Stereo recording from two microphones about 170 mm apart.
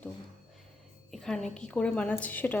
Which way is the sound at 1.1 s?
5° left (ahead or behind).